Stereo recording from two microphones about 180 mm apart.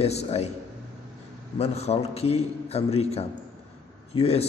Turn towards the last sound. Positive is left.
turn(degrees=35)  # may be behind; listen again after turning